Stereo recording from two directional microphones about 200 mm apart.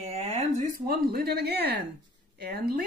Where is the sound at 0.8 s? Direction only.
50° right (ahead or behind).